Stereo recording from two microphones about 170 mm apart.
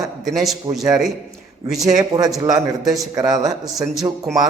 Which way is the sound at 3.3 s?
20° right (ahead or behind).